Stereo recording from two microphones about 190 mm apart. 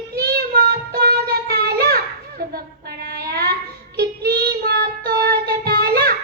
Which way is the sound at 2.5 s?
55° right (ahead or behind).